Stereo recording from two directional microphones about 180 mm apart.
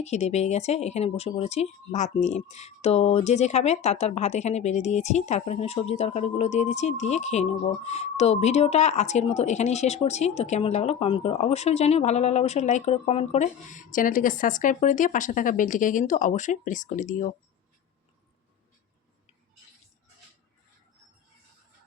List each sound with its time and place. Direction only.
0.0 s speech: 40° left (ahead or behind)